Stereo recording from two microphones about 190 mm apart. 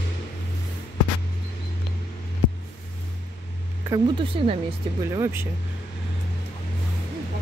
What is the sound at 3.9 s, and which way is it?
Speech, 25° right (ahead or behind).